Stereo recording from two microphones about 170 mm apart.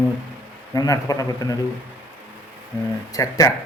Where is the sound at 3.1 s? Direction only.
20° left (ahead or behind).